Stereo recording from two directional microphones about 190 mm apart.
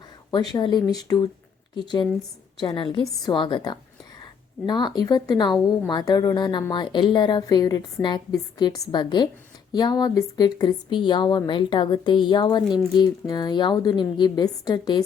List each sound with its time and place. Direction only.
0.5 s a woman's voice: 20° left (ahead or behind)